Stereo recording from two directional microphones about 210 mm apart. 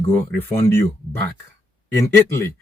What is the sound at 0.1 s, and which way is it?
Speech, 10° left (ahead or behind).